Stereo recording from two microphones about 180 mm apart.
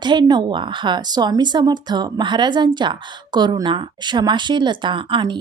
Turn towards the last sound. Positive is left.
turn(degrees=-25)  # may be behind; listen again after turning